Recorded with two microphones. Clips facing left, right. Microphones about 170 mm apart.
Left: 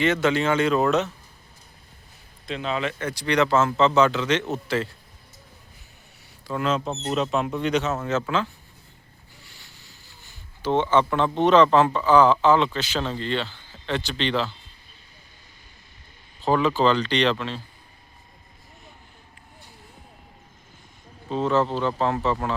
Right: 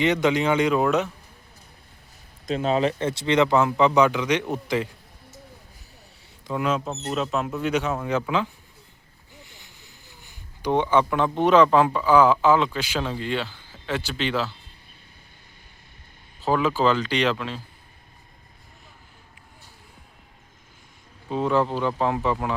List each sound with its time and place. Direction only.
0.0 s speech: 15° right (ahead or behind)
2.5 s speech: 40° right (ahead or behind); by 4.9 s 15° right (ahead or behind)
6.5 s speech: 10° right (ahead or behind)
16.4 s speech: 5° right (ahead or behind)
21.2 s speech: 10° right (ahead or behind)